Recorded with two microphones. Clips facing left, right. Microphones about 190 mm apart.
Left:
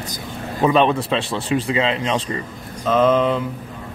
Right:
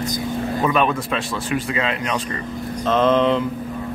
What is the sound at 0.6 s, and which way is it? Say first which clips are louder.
Speech: left 5 dB; 30° left (ahead or behind).